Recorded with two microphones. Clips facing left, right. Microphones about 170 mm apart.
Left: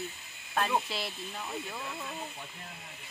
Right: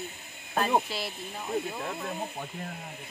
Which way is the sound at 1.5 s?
50° right (ahead or behind).